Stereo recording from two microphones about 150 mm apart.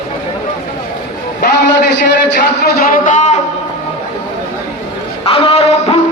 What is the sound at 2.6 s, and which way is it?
Speech, 85° left.